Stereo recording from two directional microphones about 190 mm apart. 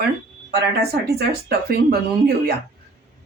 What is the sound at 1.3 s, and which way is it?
Speech, 55° right (ahead or behind).